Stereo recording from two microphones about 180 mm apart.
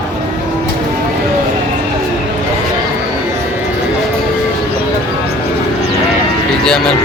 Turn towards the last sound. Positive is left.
turn(degrees=5)  # may be behind; listen again after turning